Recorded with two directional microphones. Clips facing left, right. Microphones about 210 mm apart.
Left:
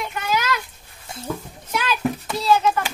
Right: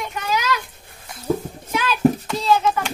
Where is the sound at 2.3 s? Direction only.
10° left (ahead or behind).